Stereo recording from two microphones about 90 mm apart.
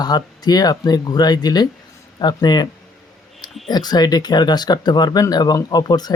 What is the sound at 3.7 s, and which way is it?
Speech, 50° left (ahead or behind).